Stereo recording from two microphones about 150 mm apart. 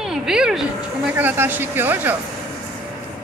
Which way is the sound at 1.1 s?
15° right (ahead or behind).